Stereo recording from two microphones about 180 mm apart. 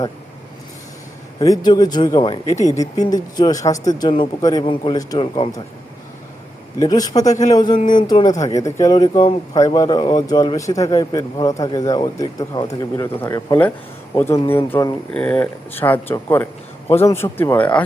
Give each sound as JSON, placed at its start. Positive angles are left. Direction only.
{"t": 1.4, "sound": "speech", "side_deg": 25}
{"t": 6.7, "sound": "speech", "side_deg": 20}
{"t": 7.8, "sound": "speech", "side_deg": 45}
{"t": 8.0, "sound": "speech", "side_deg": 20}